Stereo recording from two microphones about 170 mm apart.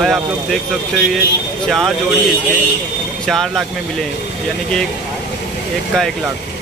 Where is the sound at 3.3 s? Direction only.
Centre (ahead or behind).